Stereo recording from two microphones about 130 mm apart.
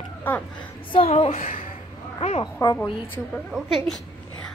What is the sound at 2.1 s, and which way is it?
Speech, 50° left (ahead or behind).